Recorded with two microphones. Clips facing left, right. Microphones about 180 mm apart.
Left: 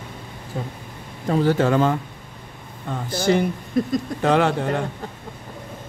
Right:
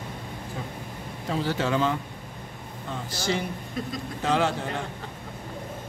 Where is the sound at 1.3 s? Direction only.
50° left (ahead or behind).